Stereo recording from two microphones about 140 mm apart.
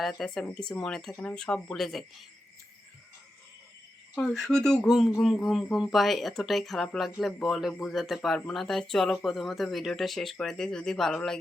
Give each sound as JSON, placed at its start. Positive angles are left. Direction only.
{"t": 0.0, "sound": "speech", "side_deg": 0}
{"t": 4.1, "sound": "speech", "side_deg": 5}